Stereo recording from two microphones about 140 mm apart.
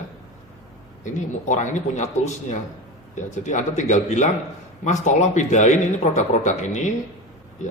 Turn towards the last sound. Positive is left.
turn(degrees=60)  # may be behind; listen again after turning